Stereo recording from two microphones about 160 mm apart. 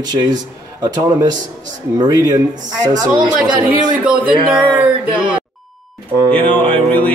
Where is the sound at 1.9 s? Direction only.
25° right (ahead or behind).